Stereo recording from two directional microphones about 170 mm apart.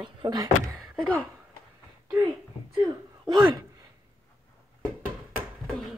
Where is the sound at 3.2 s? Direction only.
25° right (ahead or behind).